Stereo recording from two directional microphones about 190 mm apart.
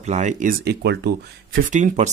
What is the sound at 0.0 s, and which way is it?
Speech, 40° right (ahead or behind).